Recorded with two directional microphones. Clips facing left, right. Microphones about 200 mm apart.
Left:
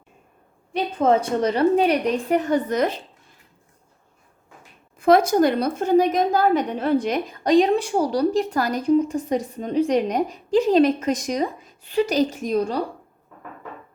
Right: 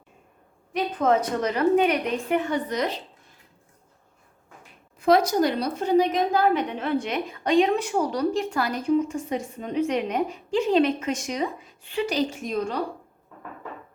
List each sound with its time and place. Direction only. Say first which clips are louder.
0.7 s a woman's voice: left 3 dB; 30° left (ahead or behind); by 3.0 s 50° left (ahead or behind)
4.9 s a woman's voice: left 4 dB; 50° left (ahead or behind)